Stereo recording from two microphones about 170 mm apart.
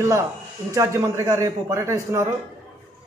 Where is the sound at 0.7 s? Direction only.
20° right (ahead or behind).